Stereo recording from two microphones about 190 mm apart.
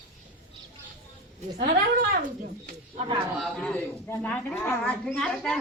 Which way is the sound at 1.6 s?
50° right (ahead or behind).